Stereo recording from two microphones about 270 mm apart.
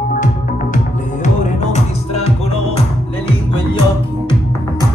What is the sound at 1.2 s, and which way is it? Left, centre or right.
Music, left.